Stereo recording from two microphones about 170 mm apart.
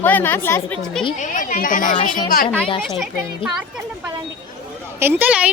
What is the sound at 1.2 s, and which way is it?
Speech, 50° left (ahead or behind).